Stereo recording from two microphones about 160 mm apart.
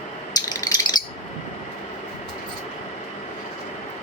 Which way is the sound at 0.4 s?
25° left (ahead or behind).